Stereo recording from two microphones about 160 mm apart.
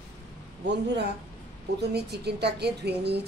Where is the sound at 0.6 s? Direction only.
90° right.